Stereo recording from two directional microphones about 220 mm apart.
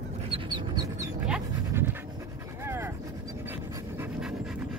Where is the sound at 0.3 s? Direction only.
20° right (ahead or behind).